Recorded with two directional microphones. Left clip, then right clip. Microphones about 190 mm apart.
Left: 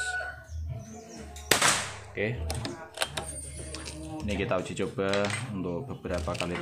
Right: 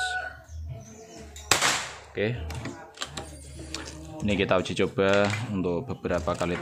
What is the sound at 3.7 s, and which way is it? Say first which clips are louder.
Music: right 5 dB; 45° right (ahead or behind).